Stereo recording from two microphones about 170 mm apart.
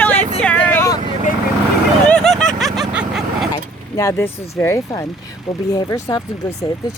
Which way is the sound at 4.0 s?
15° left (ahead or behind).